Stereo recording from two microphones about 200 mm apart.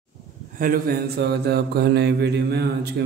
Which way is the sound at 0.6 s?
45° right (ahead or behind).